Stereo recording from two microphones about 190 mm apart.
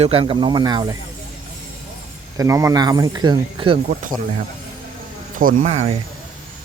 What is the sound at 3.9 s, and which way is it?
Speech, 45° right (ahead or behind).